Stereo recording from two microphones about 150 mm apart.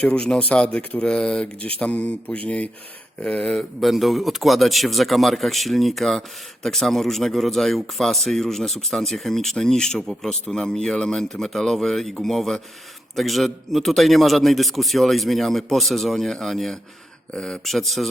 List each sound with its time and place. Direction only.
0.0 s speech: 5° left (ahead or behind)